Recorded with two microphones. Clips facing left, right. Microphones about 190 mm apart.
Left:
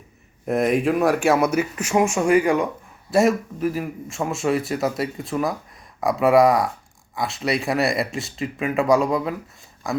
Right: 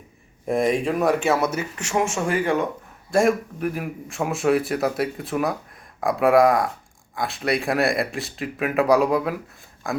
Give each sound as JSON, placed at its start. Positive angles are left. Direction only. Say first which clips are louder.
{"t": 0.4, "sound": "speech", "louder": "left 2 dB", "side_deg": 0}
{"t": 3.1, "sound": "speech", "louder": "left 1 dB", "side_deg": 5}